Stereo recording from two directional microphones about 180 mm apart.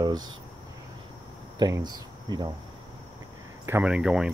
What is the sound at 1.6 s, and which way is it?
Speech, 20° right (ahead or behind).